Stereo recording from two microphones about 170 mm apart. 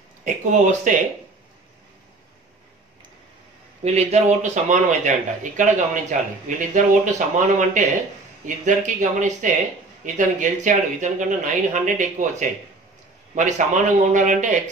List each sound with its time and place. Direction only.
0.2 s speech: 45° right (ahead or behind)
3.8 s a man's voice: 40° right (ahead or behind)